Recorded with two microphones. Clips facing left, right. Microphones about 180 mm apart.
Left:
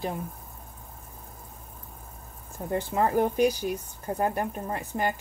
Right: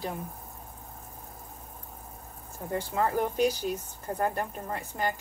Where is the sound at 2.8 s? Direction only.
15° left (ahead or behind).